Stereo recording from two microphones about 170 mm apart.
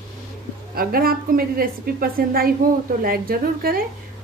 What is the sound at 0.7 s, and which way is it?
A woman's voice, 60° right (ahead or behind).